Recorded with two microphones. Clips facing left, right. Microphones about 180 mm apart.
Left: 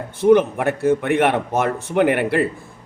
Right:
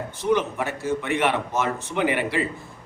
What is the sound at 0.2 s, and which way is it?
A man's voice, 55° left (ahead or behind).